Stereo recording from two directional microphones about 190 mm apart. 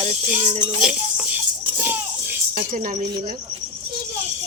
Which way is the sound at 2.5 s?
45° right (ahead or behind).